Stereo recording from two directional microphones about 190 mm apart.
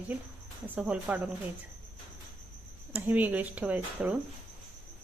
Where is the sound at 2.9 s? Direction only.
10° right (ahead or behind).